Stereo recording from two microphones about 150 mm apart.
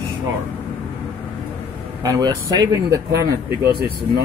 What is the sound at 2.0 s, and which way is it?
Speech, 25° right (ahead or behind).